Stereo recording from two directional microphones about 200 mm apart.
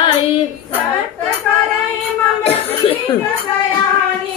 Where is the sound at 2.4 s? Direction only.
30° left (ahead or behind).